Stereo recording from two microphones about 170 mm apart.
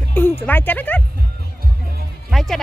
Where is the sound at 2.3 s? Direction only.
Centre (ahead or behind).